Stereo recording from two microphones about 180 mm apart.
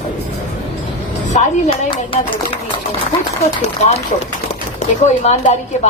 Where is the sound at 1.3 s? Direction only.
40° left (ahead or behind).